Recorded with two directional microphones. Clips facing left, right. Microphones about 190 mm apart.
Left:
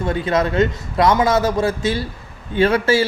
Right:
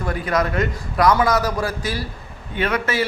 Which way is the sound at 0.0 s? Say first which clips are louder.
Left 3 dB; 25° left (ahead or behind).